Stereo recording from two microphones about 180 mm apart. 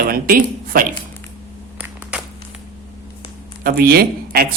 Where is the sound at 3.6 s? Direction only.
60° right (ahead or behind).